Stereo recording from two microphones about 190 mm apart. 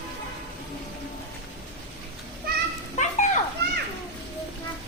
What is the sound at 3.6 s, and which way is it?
Children playing, 60° right (ahead or behind).